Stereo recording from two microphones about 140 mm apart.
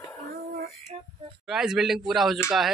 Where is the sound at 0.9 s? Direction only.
40° right (ahead or behind).